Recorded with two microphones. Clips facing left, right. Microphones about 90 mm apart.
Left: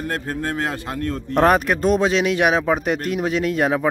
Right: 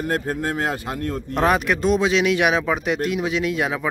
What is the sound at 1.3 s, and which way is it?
Speech, 45° left (ahead or behind).